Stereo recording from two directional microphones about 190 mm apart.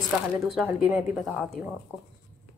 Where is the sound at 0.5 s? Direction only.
5° right (ahead or behind).